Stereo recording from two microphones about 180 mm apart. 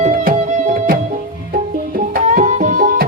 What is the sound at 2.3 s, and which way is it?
Music, 45° right (ahead or behind).